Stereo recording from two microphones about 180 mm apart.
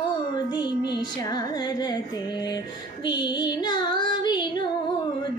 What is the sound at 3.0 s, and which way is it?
Music, 25° left (ahead or behind).